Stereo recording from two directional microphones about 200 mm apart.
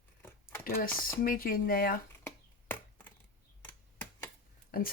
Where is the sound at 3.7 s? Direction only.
10° left (ahead or behind).